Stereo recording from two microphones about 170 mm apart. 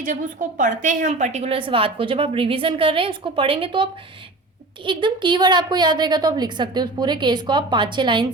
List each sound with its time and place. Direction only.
0.0 s a woman's voice: 50° right (ahead or behind); by 3.8 s 30° right (ahead or behind)
4.9 s a woman's voice: 30° right (ahead or behind)